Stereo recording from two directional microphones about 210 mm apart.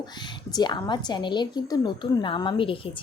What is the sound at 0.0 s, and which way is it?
A woman's voice, 20° left (ahead or behind).